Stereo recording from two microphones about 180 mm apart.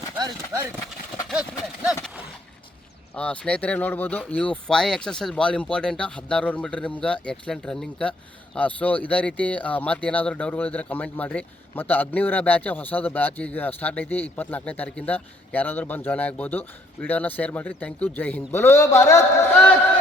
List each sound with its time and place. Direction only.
0.2 s clip-clop: 20° right (ahead or behind)
0.9 s horse: 5° right (ahead or behind)
3.2 s speech: 5° left (ahead or behind)